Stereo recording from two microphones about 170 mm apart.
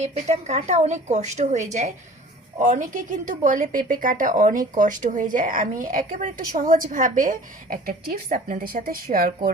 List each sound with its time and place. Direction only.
0.0 s a woman's voice: 40° right (ahead or behind); by 9.5 s 60° right (ahead or behind)